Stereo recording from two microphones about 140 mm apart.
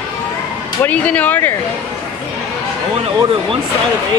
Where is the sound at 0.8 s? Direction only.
10° left (ahead or behind).